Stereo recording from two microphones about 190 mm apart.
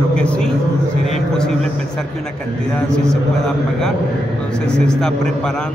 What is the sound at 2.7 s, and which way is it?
Speech, 5° left (ahead or behind).